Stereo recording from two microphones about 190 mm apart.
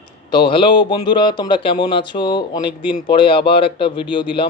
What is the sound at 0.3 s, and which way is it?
A man's voice, 25° left (ahead or behind).